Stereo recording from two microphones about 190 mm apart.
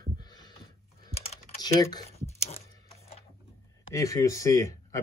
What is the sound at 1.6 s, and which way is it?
Speech, 20° left (ahead or behind).